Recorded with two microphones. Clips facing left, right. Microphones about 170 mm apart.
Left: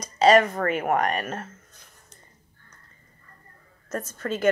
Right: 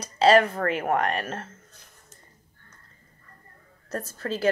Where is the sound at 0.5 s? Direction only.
40° left (ahead or behind).